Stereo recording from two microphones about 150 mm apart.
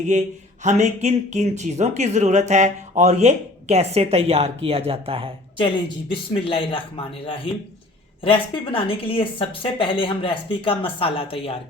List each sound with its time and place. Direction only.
0.1 s speech: 55° right (ahead or behind); by 5.3 s 40° right (ahead or behind)
6.1 s speech: 35° left (ahead or behind)